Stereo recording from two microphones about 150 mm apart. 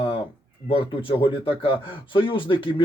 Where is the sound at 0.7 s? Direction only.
35° left (ahead or behind).